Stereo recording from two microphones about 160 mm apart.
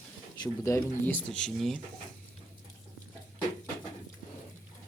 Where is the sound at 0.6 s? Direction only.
15° left (ahead or behind).